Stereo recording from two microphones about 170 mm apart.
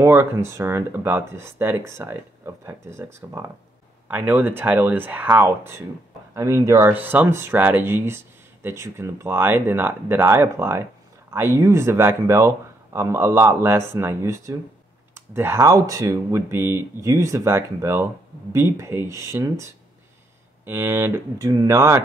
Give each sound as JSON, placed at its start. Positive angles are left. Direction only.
{"t": 0.0, "sound": "speech", "side_deg": -15}